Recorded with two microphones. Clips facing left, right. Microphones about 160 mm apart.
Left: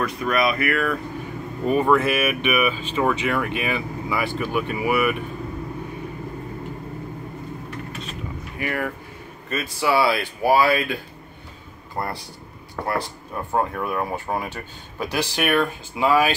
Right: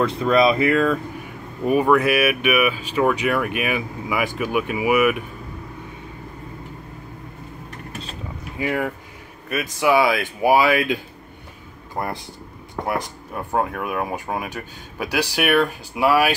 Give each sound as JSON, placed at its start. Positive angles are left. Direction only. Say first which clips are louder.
{"t": 0.0, "sound": "speech", "louder": "right 5 dB", "side_deg": -25}
{"t": 1.7, "sound": "speech", "louder": "right 2 dB", "side_deg": -10}
{"t": 7.9, "sound": "mechanisms", "louder": "left 1 dB", "side_deg": -35}
{"t": 8.5, "sound": "speech", "louder": "right 3 dB", "side_deg": -15}